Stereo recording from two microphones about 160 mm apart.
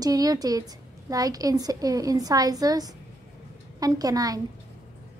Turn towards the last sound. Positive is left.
turn(degrees=-20)  # may be behind; listen again after turning